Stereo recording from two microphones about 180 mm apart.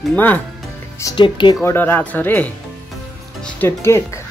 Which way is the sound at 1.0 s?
20° left (ahead or behind).